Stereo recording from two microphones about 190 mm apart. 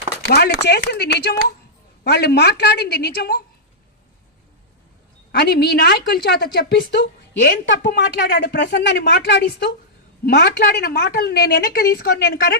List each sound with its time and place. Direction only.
0.3 s a woman's voice: 60° left (ahead or behind)
5.3 s a woman's voice: 55° left (ahead or behind)